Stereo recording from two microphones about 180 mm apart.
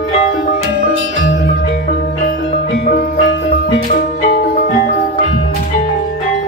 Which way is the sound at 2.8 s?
55° left (ahead or behind).